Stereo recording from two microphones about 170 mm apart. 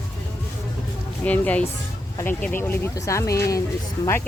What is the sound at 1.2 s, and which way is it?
Speech, 10° left (ahead or behind).